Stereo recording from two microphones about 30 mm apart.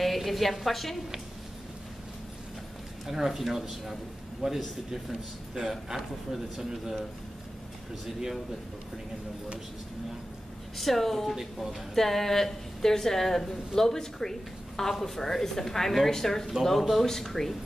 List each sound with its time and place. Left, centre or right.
0.0 s a woman's voice: centre
3.1 s speech: centre
4.4 s a man's voice: right
5.7 s speech: centre
10.8 s a woman's voice: centre
11.3 s speech: centre
11.9 s a woman's voice: centre